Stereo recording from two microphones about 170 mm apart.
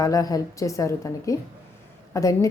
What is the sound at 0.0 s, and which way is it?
A woman's voice, 20° left (ahead or behind).